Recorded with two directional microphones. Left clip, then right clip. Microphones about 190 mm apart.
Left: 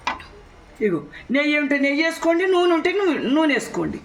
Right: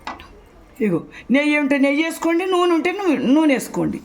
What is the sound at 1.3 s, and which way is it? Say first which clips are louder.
Speech: right 2 dB; 45° right (ahead or behind).